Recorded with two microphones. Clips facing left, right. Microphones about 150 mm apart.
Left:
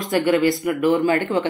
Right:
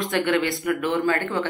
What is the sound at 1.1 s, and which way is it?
Speech, 20° left (ahead or behind).